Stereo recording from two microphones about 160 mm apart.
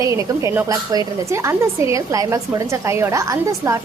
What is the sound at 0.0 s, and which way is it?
A woman's voice, 20° right (ahead or behind).